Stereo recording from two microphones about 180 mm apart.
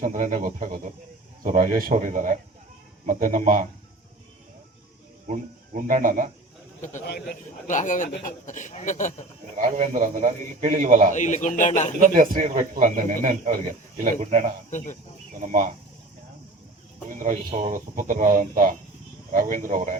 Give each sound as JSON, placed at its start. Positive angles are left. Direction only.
{"t": 0.0, "sound": "speech", "side_deg": -45}
{"t": 5.3, "sound": "speech", "side_deg": -45}
{"t": 7.0, "sound": "speech", "side_deg": 65}
{"t": 7.7, "sound": "speech", "side_deg": 45}
{"t": 9.7, "sound": "speech", "side_deg": -40}
{"t": 11.1, "sound": "a man's voice", "side_deg": 40}
{"t": 11.9, "sound": "speech", "side_deg": -45}
{"t": 14.7, "sound": "speech", "side_deg": 45}
{"t": 15.4, "sound": "speech", "side_deg": -45}
{"t": 17.1, "sound": "speech", "side_deg": -45}